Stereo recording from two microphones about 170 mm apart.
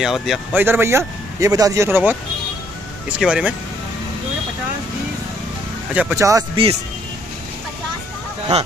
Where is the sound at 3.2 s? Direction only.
5° right (ahead or behind).